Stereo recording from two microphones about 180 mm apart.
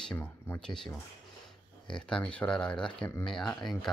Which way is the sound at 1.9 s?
5° left (ahead or behind).